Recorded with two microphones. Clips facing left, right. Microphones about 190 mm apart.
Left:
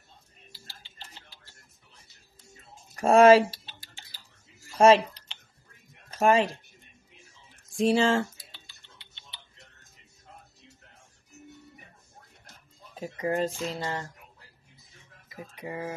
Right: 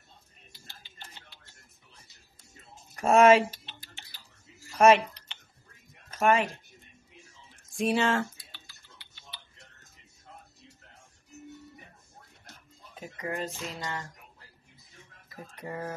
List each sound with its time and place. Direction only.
0.5 s a sound: 30° left (ahead or behind)
3.0 s speech: 35° left (ahead or behind)
4.7 s speech: 30° left (ahead or behind)
7.7 s speech: 30° left (ahead or behind)
8.6 s tick-tock: 25° left (ahead or behind)
12.9 s speech: 35° left (ahead or behind)
15.3 s speech: 10° left (ahead or behind)